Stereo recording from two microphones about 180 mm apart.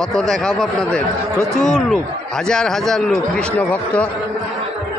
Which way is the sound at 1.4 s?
20° right (ahead or behind).